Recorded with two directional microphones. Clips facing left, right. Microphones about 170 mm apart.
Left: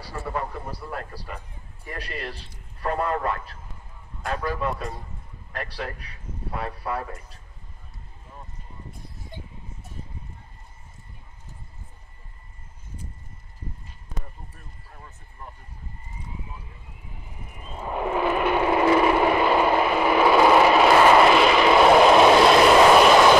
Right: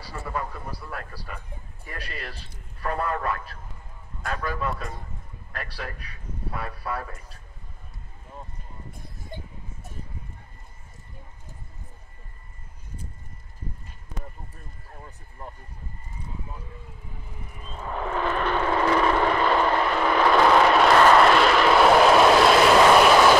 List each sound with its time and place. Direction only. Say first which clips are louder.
2.8 s a man's voice: left 2 dB; 20° left (ahead or behind)
5.5 s a man's voice: left 3 dB; 20° left (ahead or behind)
17.6 s vehicle: left 3 dB; 15° left (ahead or behind); by 23.3 s centre (ahead or behind)